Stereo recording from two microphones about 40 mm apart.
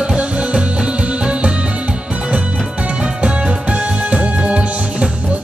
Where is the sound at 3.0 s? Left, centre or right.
Right.